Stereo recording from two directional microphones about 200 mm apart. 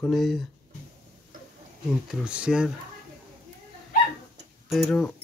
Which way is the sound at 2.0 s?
5° right (ahead or behind).